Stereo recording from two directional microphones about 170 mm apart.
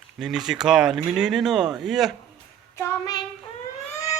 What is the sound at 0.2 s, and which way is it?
Speech, centre (ahead or behind).